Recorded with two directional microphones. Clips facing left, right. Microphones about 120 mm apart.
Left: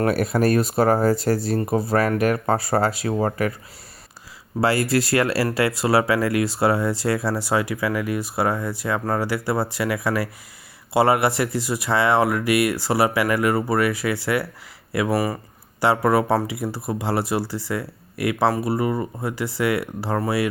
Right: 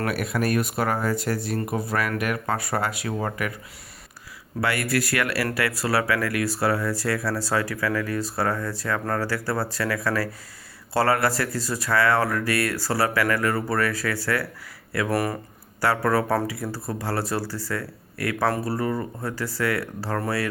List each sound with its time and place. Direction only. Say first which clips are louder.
0.0 s speech: left 6 dB; 35° left (ahead or behind)
4.6 s speech: left 5 dB; 30° left (ahead or behind)
15.1 s speech: left 2 dB; 5° left (ahead or behind)
15.8 s speech: left 4 dB; 20° left (ahead or behind)